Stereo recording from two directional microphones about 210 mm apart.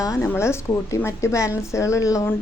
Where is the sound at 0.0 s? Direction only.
15° left (ahead or behind).